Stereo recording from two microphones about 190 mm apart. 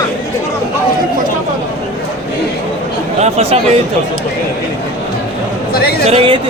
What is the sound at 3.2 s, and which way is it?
Speech, 35° right (ahead or behind).